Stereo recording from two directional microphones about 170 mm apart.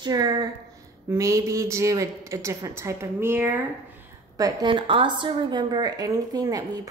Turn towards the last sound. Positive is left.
turn(degrees=-20)  # may be behind; listen again after turning